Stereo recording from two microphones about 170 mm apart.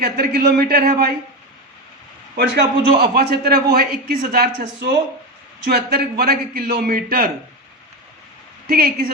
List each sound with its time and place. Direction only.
0.0 s a man's voice: 65° right (ahead or behind)
2.3 s a man's voice: 75° right (ahead or behind)
8.6 s speech: 60° right (ahead or behind)